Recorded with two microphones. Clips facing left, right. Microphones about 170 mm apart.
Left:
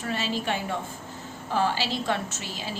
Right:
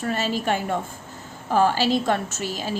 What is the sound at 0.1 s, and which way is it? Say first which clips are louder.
A woman's voice: right 4 dB; 45° right (ahead or behind).